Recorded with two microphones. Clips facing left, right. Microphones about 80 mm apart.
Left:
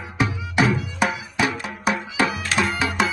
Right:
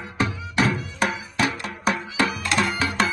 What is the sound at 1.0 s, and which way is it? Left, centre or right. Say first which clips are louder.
Music: left 2 dB; centre.